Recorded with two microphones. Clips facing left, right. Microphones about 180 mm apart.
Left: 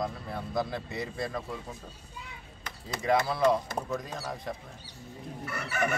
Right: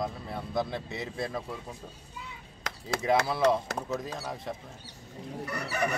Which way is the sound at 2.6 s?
80° right.